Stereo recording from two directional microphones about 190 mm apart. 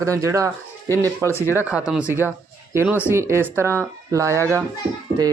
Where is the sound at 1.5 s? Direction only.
10° right (ahead or behind).